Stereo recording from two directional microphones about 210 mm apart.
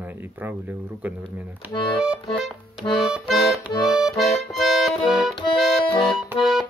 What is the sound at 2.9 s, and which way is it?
Accordion, centre (ahead or behind).